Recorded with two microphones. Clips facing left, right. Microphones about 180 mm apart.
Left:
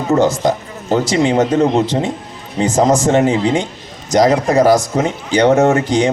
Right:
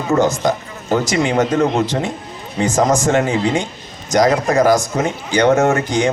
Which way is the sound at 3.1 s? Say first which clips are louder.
Left 3 dB; 25° left (ahead or behind).